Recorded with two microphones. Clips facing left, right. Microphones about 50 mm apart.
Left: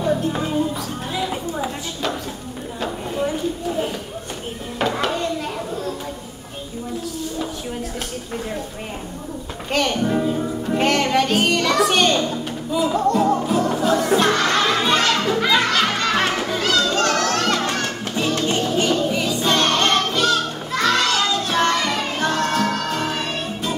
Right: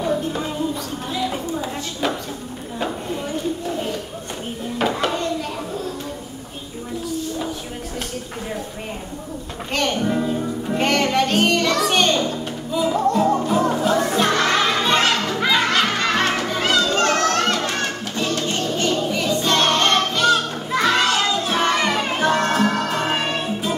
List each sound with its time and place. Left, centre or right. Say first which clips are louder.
4.7 s a sound: even; centre
9.7 s music: left 1 dB; centre
14.0 s crowd: left 1 dB; centre
15.2 s music: left 1 dB; centre
16.1 s children playing: even; centre
16.5 s children playing: right 1 dB; centre
17.5 s music: left 1 dB; centre